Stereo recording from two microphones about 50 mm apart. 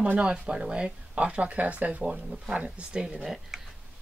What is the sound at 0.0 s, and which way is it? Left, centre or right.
Speech, right.